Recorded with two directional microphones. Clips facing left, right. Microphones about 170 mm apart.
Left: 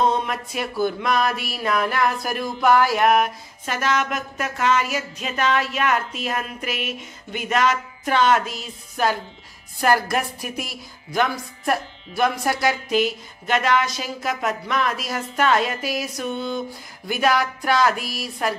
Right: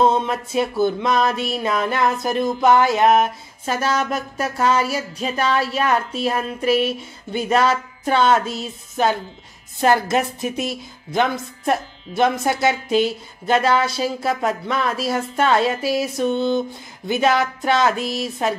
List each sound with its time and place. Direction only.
0.0 s speech: 25° right (ahead or behind)